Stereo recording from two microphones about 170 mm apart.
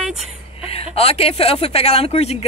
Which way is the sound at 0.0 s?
5° right (ahead or behind).